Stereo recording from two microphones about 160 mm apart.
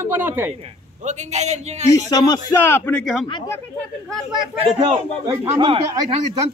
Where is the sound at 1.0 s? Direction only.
45° right (ahead or behind).